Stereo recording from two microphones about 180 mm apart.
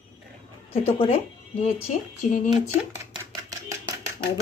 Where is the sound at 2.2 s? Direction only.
40° left (ahead or behind).